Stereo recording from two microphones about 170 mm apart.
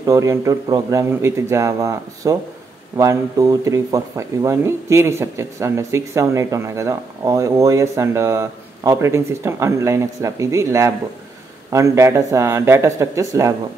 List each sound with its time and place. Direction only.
0.0 s a man's voice: 20° right (ahead or behind)